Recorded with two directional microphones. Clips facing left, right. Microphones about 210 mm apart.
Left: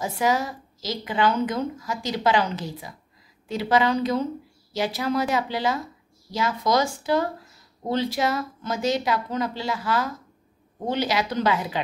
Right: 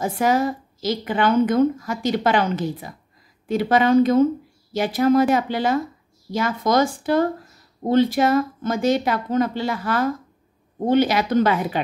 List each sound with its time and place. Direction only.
0.0 s a woman's voice: 55° right (ahead or behind)